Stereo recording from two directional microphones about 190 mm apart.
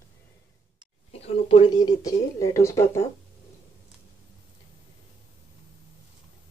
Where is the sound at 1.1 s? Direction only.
30° left (ahead or behind); by 3.0 s 15° left (ahead or behind).